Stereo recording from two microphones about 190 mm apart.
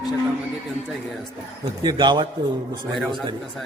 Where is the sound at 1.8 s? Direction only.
25° right (ahead or behind).